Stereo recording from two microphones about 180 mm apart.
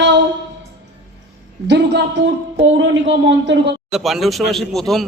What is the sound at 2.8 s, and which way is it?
Speech, 90° right.